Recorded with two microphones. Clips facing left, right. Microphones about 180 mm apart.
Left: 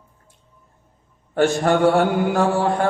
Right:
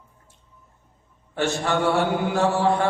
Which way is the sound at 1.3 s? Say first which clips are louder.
Left 6 dB; 50° left (ahead or behind).